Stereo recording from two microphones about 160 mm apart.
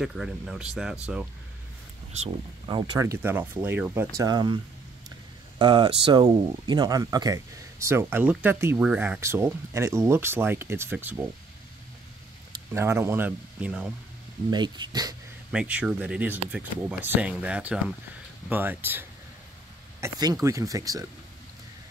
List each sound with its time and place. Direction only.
0.0 s speech: centre (ahead or behind)
2.1 s speech: 35° right (ahead or behind)
3.0 s speech: 15° right (ahead or behind)
4.2 s speech: 25° right (ahead or behind)
5.6 s speech: 30° right (ahead or behind); by 11.2 s 10° right (ahead or behind)
12.7 s speech: 15° right (ahead or behind)
14.5 s speech: 25° right (ahead or behind)
15.5 s speech: 10° right (ahead or behind)
20.0 s speech: 25° right (ahead or behind)